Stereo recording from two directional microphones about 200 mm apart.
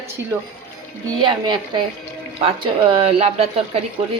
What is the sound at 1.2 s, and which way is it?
A woman's voice, 20° right (ahead or behind).